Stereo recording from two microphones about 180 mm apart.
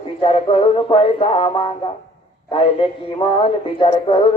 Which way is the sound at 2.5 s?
30° left (ahead or behind).